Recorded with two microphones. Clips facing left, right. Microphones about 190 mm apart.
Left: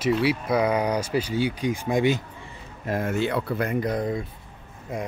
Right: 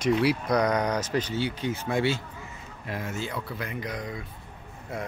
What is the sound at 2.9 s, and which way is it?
Speech, 55° left (ahead or behind).